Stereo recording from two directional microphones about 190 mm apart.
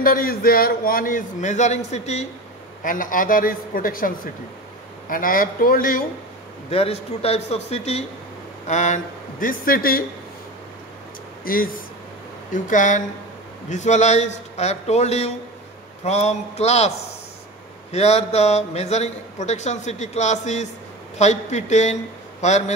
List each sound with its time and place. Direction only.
0.0 s a man's voice: 50° left (ahead or behind)
6.7 s a man's voice: 30° left (ahead or behind); by 10.0 s 50° left (ahead or behind)
11.4 s a man's voice: 50° left (ahead or behind)
17.9 s a man's voice: 35° left (ahead or behind)